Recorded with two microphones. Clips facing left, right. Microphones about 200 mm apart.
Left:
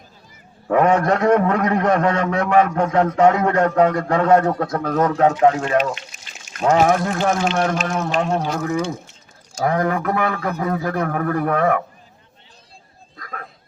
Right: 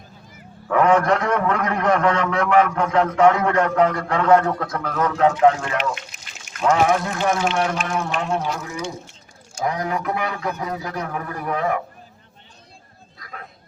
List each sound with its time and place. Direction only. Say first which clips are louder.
0.7 s a man's voice: left 1 dB; 40° left (ahead or behind)
6.6 s a man's voice: left 2 dB; 45° left (ahead or behind)